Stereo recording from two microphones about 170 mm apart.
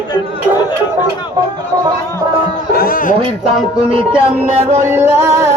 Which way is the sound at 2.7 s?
60° left (ahead or behind).